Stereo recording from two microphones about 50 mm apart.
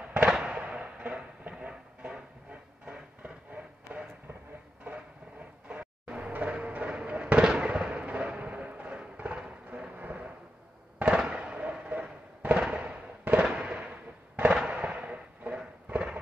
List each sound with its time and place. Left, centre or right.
0.2 s fireworks: centre
1.6 s a sound: centre
5.7 s vehicle: right
6.3 s fireworks: right
11.9 s a sound: right
12.5 s fireworks: centre